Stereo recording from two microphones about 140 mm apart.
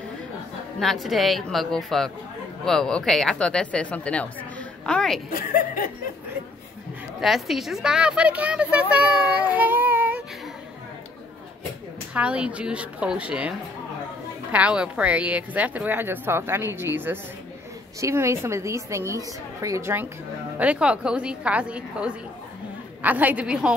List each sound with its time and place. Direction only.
0.7 s speech: centre (ahead or behind)
5.3 s speech: 90° left
7.2 s a woman's voice: centre (ahead or behind)
12.1 s a woman's voice: 10° right (ahead or behind)